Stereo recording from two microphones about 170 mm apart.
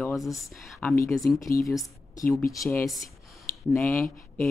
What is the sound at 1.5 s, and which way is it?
Speech, 20° left (ahead or behind).